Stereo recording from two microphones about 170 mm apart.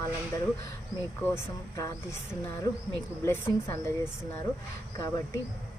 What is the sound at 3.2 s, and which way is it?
Speech, 15° left (ahead or behind).